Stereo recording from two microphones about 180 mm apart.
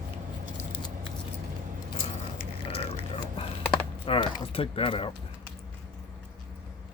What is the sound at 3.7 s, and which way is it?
Typing, 30° left (ahead or behind).